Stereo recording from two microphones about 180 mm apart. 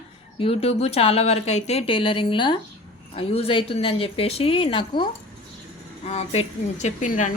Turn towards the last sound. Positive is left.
turn(degrees=45)  # may be behind; listen again after turning